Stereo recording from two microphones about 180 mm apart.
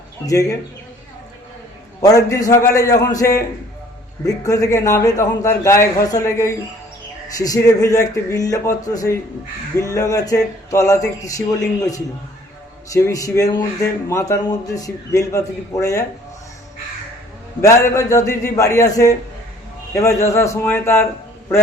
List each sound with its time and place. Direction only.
0.3 s a man's voice: 20° left (ahead or behind)
2.0 s a man's voice: 20° left (ahead or behind)
17.6 s a man's voice: 15° left (ahead or behind)